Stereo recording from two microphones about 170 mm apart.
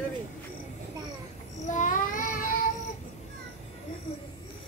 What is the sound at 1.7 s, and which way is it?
Child singing, 50° left (ahead or behind).